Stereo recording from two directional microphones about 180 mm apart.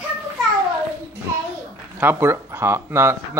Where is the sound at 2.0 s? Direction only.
10° right (ahead or behind).